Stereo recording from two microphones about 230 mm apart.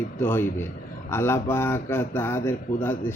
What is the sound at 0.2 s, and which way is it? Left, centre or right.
Speech, centre.